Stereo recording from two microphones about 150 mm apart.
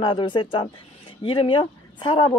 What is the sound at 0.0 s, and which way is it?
A woman's voice, 30° left (ahead or behind).